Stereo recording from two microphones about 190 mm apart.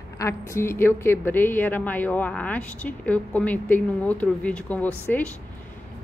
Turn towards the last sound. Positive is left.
turn(degrees=5)  # may be behind; listen again after turning